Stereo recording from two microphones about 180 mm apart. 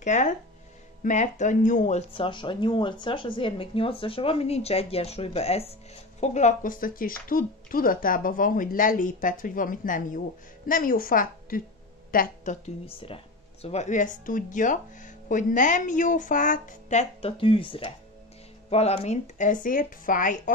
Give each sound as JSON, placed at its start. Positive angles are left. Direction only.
{"t": 0.0, "sound": "speech", "side_deg": 40}
{"t": 12.8, "sound": "speech", "side_deg": 30}